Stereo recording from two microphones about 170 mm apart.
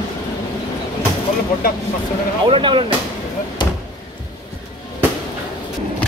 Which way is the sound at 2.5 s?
30° right (ahead or behind).